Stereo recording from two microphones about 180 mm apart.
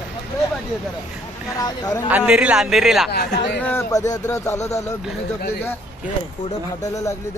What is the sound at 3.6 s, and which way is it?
Speech, 10° left (ahead or behind).